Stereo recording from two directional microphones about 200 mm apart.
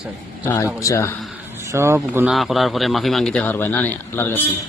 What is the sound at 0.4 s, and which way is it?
Speech, 10° left (ahead or behind).